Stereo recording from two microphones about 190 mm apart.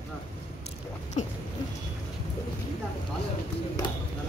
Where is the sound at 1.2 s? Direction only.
35° left (ahead or behind).